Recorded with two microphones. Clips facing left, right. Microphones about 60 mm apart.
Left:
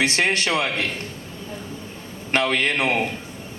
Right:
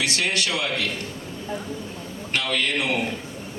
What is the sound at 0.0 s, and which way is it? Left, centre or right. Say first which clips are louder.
Speech: left 4 dB; left.